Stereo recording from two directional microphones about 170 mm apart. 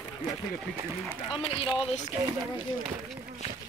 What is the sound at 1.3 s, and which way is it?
Speech, 30° left (ahead or behind).